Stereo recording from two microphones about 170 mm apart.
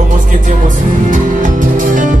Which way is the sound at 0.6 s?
50° right (ahead or behind).